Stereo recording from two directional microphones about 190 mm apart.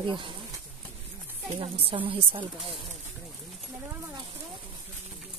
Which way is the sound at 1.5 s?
30° right (ahead or behind).